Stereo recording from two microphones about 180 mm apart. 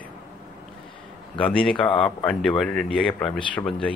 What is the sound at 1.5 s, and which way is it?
Speech, 5° left (ahead or behind).